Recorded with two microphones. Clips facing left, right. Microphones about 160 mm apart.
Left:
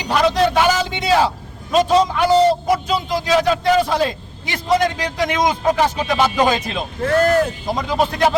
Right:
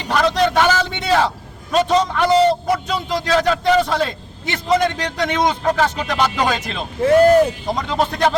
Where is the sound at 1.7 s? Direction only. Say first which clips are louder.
Left 2 dB; 10° left (ahead or behind).